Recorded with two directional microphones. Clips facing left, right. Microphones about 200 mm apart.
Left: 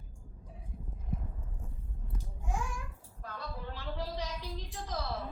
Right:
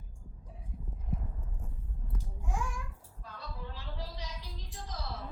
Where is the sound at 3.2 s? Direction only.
60° left (ahead or behind).